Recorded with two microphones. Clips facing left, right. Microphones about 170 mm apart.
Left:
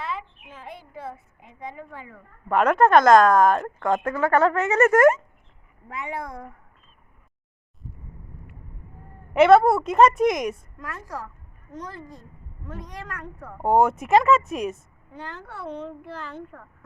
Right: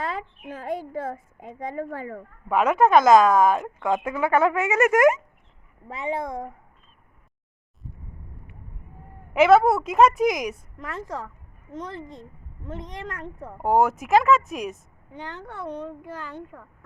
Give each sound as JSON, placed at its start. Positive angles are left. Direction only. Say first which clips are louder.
{"t": 0.0, "sound": "a woman's voice", "louder": "right 2 dB", "side_deg": -40}
{"t": 2.5, "sound": "speech", "louder": "left 1 dB", "side_deg": -5}
{"t": 5.9, "sound": "speech", "louder": "right 4 dB", "side_deg": -25}
{"t": 9.3, "sound": "a woman's voice", "louder": "left 1 dB", "side_deg": 0}
{"t": 10.8, "sound": "speech", "louder": "right 2 dB", "side_deg": -25}
{"t": 13.6, "sound": "a woman's voice", "louder": "left 1 dB", "side_deg": 0}
{"t": 15.1, "sound": "speech", "louder": "right 1 dB", "side_deg": -20}